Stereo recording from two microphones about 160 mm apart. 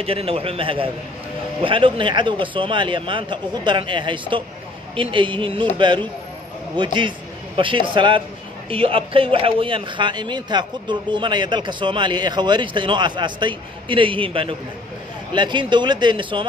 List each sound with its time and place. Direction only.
0.0 s a man's voice: 35° right (ahead or behind)
6.8 s a man's voice: 30° right (ahead or behind)